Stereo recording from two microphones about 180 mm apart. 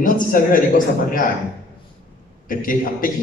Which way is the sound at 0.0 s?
50° left (ahead or behind).